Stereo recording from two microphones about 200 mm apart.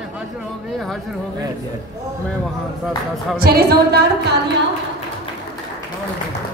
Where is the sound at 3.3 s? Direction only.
50° right (ahead or behind).